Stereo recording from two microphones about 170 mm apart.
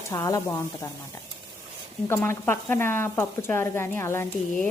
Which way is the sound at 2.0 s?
15° left (ahead or behind).